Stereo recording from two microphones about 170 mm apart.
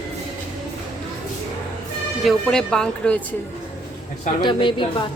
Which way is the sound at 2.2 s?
5° left (ahead or behind).